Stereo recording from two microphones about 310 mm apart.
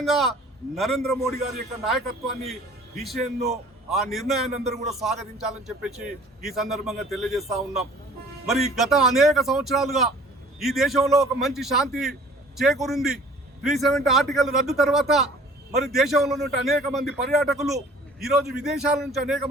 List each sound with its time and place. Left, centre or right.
0.0 s a man's voice: centre
3.3 s a man's voice: right
3.8 s a man's voice: centre
4.6 s speech: right
4.9 s a man's voice: centre